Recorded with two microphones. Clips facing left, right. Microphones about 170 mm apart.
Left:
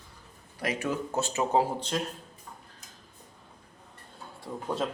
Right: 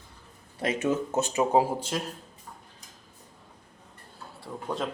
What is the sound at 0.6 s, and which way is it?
Speech, 25° right (ahead or behind).